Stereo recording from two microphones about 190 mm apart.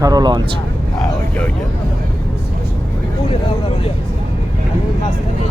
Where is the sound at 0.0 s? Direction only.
20° right (ahead or behind).